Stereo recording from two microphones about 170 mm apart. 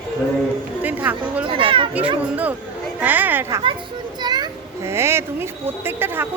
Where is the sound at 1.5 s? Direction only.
30° right (ahead or behind).